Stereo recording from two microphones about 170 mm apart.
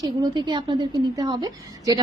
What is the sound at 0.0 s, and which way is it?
A woman's voice, 25° right (ahead or behind).